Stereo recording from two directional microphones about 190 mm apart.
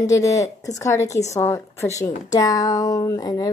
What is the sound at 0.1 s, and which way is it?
Speech, 15° left (ahead or behind).